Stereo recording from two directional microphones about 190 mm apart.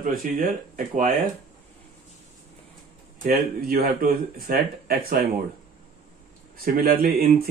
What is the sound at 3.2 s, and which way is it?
A man's voice, 50° right (ahead or behind).